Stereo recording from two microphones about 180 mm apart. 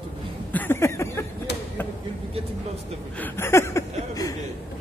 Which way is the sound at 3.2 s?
10° left (ahead or behind).